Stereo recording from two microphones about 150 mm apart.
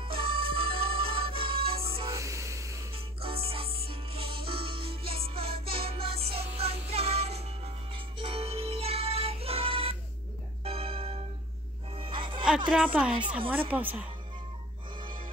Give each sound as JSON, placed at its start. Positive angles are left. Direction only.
{"t": 0.0, "sound": "music", "side_deg": -35}
{"t": 2.0, "sound": "music", "side_deg": -20}
{"t": 2.9, "sound": "music", "side_deg": -40}
{"t": 12.6, "sound": "a woman's voice", "side_deg": -5}